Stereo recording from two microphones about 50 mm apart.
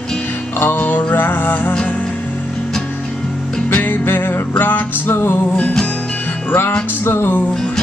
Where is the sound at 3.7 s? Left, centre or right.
Left.